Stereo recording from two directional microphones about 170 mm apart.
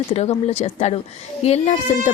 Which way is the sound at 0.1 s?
40° left (ahead or behind).